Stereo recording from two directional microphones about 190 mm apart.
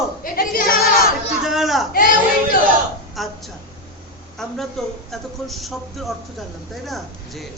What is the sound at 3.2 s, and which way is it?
Speech, centre (ahead or behind).